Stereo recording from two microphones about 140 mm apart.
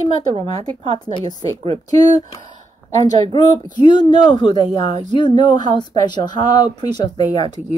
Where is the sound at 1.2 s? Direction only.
30° left (ahead or behind).